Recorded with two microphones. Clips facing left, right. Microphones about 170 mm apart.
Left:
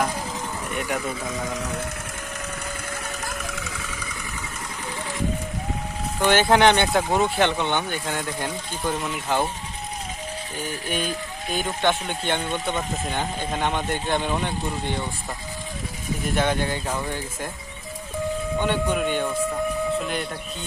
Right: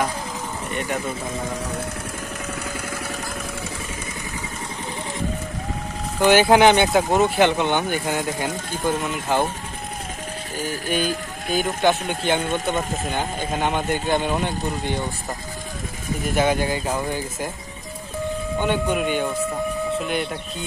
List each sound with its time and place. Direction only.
3.1 s vehicle: 30° right (ahead or behind)
6.2 s speech: 10° right (ahead or behind)
10.9 s speech: centre (ahead or behind)
16.3 s speech: 5° right (ahead or behind)
18.6 s speech: 5° right (ahead or behind)